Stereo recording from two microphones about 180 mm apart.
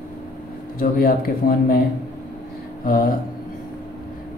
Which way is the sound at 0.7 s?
55° left (ahead or behind).